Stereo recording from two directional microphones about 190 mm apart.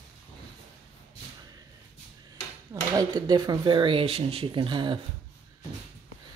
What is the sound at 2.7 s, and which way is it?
Speech, 20° right (ahead or behind).